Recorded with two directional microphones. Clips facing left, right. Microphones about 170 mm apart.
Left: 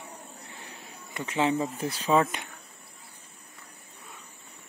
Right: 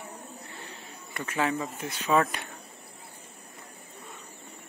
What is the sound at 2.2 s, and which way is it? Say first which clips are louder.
Speech: left 1 dB; 20° left (ahead or behind).